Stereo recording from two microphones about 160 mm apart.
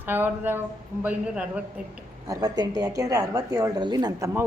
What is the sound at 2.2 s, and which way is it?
A woman's voice, 25° right (ahead or behind).